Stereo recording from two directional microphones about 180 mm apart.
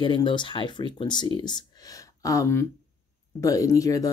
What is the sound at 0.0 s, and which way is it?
Speech, 25° left (ahead or behind).